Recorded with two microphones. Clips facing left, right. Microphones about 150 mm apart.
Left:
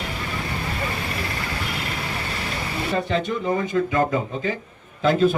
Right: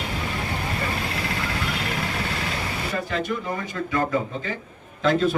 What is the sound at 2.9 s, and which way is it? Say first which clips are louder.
Speech: left 4 dB; 25° left (ahead or behind).